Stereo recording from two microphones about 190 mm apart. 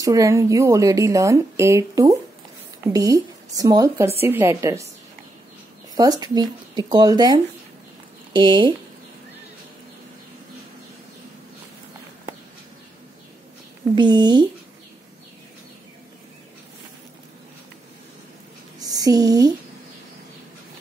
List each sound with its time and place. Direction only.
0.0 s a woman's voice: 15° right (ahead or behind)
5.9 s speech: 20° right (ahead or behind)
13.9 s speech: 25° right (ahead or behind)
18.8 s speech: 20° right (ahead or behind)